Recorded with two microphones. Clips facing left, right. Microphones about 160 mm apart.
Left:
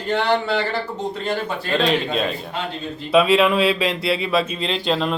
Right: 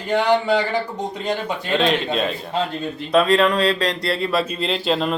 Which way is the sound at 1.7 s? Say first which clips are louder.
Even; centre (ahead or behind).